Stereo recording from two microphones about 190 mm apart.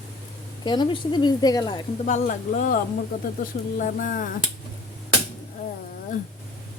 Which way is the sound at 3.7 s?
45° left (ahead or behind).